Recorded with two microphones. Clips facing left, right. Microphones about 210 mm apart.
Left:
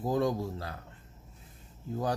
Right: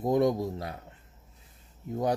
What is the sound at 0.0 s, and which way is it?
Speech, 20° right (ahead or behind).